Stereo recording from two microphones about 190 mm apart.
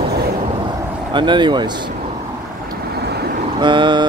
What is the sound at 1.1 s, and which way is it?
Speech, 25° right (ahead or behind).